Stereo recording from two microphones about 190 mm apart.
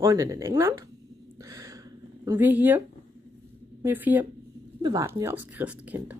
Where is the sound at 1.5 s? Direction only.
20° right (ahead or behind).